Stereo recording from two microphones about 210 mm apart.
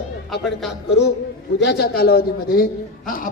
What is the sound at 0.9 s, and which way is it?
A man's voice, 55° left (ahead or behind).